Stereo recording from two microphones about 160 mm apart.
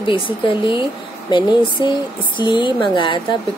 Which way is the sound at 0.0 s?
30° left (ahead or behind).